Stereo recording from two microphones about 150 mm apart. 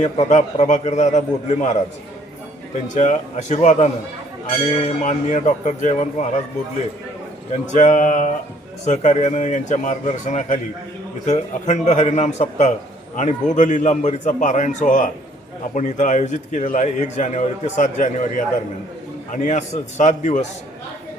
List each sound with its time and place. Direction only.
0.0 s a man's voice: 45° left (ahead or behind)
2.9 s a man's voice: 55° left (ahead or behind)
7.5 s a man's voice: 55° left (ahead or behind)